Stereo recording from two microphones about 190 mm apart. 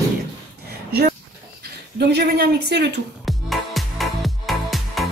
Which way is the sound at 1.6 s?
60° right (ahead or behind).